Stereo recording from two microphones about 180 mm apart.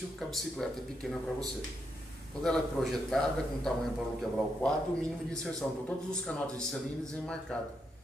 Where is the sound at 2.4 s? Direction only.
5° left (ahead or behind).